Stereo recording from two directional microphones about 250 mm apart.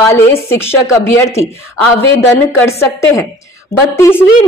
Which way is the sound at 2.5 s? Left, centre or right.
Centre.